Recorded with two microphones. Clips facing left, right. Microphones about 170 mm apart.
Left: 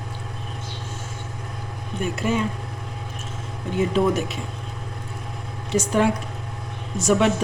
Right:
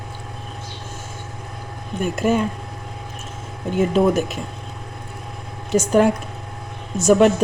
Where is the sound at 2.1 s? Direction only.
45° right (ahead or behind).